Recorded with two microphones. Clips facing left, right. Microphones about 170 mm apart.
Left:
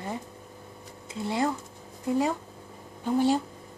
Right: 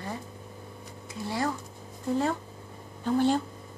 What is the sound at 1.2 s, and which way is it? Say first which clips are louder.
Speech: left 3 dB; 20° left (ahead or behind).